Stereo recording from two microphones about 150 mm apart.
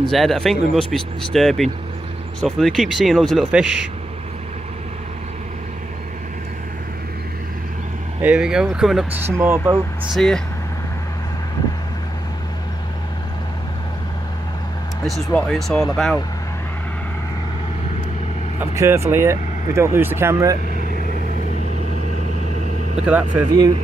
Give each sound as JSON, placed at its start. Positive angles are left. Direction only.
{"t": 0.0, "sound": "speech", "side_deg": 0}
{"t": 8.2, "sound": "speech", "side_deg": -5}
{"t": 9.2, "sound": "speech", "side_deg": -15}
{"t": 10.1, "sound": "speech", "side_deg": 5}
{"t": 15.3, "sound": "speech", "side_deg": 5}
{"t": 18.6, "sound": "speech", "side_deg": -15}
{"t": 23.5, "sound": "speech", "side_deg": -25}